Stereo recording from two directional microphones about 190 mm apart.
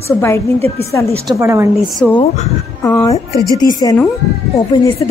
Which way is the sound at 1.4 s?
15° right (ahead or behind).